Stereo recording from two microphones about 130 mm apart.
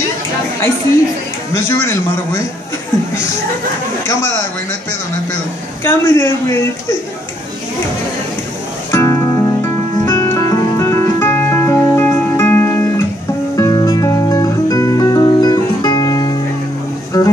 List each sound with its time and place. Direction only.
1.7 s a man's voice: 20° left (ahead or behind)
5.9 s a man's voice: 15° left (ahead or behind)
8.9 s music: 20° left (ahead or behind)
13.6 s music: 25° left (ahead or behind)